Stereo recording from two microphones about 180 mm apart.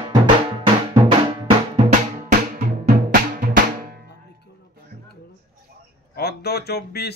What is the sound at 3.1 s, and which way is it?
Music, 50° right (ahead or behind).